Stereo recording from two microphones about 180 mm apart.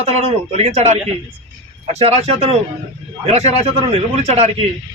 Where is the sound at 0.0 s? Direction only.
35° right (ahead or behind).